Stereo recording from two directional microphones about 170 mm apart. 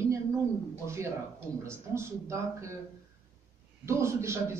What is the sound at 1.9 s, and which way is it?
Speech, 15° right (ahead or behind).